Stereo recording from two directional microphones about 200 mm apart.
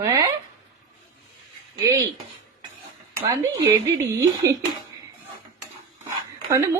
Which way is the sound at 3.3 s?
15° right (ahead or behind).